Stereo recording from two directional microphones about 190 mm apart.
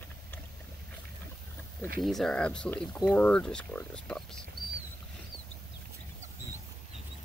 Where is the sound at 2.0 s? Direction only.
Centre (ahead or behind).